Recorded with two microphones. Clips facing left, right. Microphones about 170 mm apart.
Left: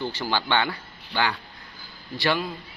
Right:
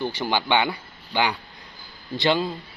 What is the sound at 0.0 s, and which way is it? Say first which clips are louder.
A man's voice: right 2 dB; 15° right (ahead or behind).